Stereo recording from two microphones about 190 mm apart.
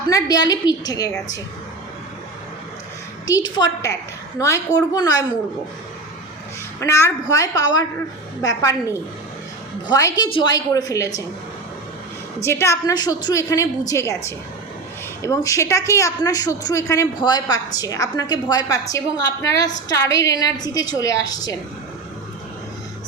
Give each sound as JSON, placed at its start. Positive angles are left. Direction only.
{"t": 0.1, "sound": "a woman's voice", "side_deg": 20}
{"t": 3.2, "sound": "a woman's voice", "side_deg": 20}
{"t": 6.7, "sound": "a woman's voice", "side_deg": 15}
{"t": 12.5, "sound": "a woman's voice", "side_deg": 15}
{"t": 15.2, "sound": "a woman's voice", "side_deg": 15}